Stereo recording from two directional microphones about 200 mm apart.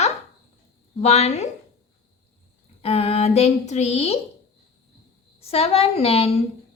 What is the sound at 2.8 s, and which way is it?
A woman's voice, 30° left (ahead or behind).